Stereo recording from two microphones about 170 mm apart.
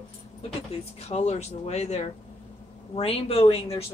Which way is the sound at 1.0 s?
40° left (ahead or behind).